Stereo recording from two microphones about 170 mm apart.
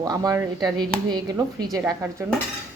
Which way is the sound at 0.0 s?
20° right (ahead or behind).